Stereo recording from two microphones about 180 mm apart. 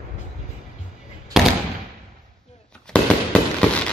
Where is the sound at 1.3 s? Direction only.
Centre (ahead or behind).